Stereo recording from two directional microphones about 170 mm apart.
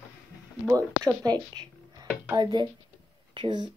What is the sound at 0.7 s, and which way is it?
Speech, 20° right (ahead or behind).